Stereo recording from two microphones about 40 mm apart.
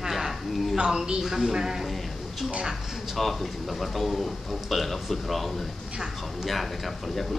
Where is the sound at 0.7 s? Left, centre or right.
Centre.